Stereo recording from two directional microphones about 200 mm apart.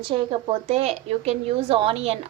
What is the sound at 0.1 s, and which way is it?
A woman's voice, 30° right (ahead or behind).